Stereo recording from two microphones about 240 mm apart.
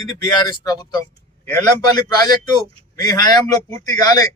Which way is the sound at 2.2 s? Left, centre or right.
Centre.